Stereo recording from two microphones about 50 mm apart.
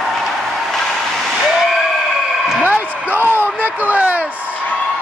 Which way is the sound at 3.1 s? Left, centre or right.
Right.